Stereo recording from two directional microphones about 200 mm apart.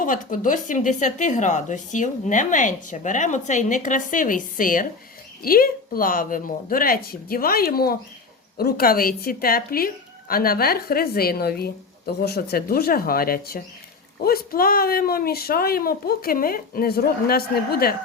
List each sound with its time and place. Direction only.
0.0 s a woman's voice: 40° left (ahead or behind)